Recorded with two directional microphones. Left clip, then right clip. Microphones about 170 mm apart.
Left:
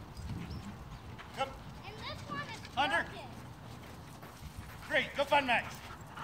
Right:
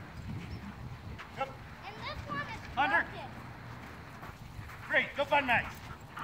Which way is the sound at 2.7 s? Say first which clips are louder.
Right 3 dB; 15° left (ahead or behind).